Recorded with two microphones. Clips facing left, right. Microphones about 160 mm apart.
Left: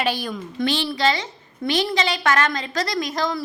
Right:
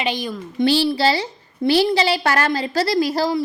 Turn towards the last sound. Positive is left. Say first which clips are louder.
# right 6 dB
turn(degrees=-30)  # may be behind; listen again after turning